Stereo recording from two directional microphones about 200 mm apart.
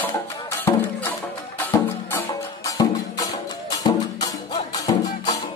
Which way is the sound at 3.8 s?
20° left (ahead or behind).